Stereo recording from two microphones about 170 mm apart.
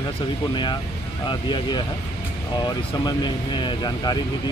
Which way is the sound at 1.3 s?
25° left (ahead or behind).